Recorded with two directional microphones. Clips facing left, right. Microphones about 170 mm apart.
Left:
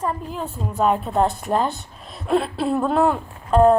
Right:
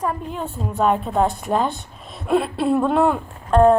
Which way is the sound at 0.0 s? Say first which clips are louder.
Right 1 dB; centre (ahead or behind).